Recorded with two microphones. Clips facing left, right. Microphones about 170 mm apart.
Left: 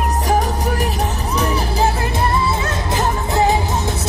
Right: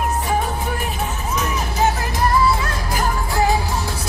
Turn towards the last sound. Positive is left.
turn(degrees=25)  # may be behind; listen again after turning